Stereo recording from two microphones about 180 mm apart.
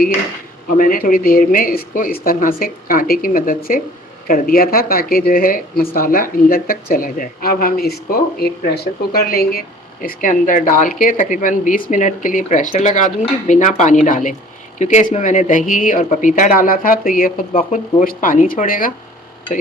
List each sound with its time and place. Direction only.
0.8 s speech: 50° left (ahead or behind)